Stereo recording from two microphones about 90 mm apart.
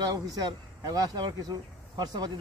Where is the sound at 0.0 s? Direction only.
45° right (ahead or behind).